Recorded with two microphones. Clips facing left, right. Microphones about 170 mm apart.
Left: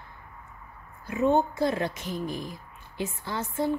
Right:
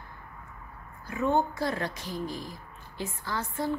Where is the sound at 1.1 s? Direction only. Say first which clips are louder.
Left 3 dB; 20° left (ahead or behind).